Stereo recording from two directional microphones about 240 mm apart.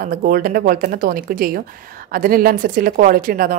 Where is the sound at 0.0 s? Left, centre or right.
Right.